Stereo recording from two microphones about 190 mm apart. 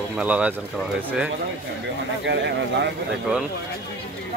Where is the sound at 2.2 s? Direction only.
65° right (ahead or behind).